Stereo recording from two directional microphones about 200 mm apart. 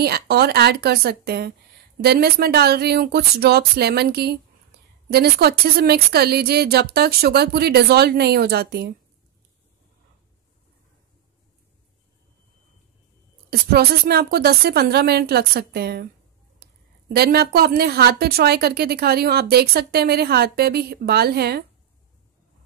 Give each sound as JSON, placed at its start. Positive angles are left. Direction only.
{"t": 0.0, "sound": "a woman's voice", "side_deg": -50}
{"t": 13.5, "sound": "a woman's voice", "side_deg": -50}
{"t": 16.6, "sound": "a sound", "side_deg": -50}
{"t": 17.1, "sound": "a woman's voice", "side_deg": -50}